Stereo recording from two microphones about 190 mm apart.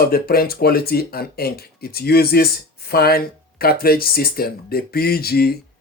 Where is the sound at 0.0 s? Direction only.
55° left (ahead or behind).